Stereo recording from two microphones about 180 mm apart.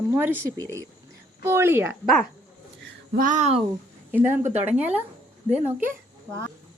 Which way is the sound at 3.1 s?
45° right (ahead or behind).